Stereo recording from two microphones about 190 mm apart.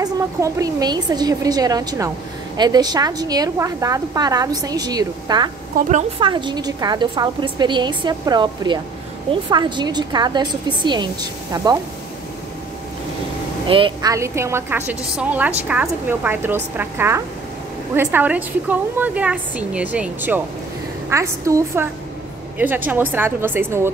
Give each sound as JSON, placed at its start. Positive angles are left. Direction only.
{"t": 0.0, "sound": "a woman's voice", "side_deg": -20}
{"t": 13.7, "sound": "a woman's voice", "side_deg": -25}